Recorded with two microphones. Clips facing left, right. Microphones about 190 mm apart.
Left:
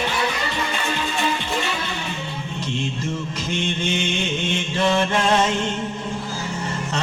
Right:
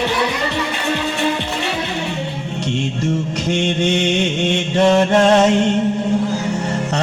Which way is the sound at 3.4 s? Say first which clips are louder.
Right 7 dB; 75° right (ahead or behind).